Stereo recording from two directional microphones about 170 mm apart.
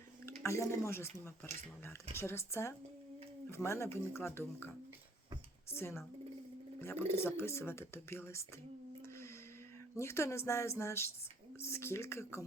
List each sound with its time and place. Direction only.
0.3 s speech: 15° left (ahead or behind)
5.7 s speech: 15° left (ahead or behind)
10.0 s speech: 15° left (ahead or behind)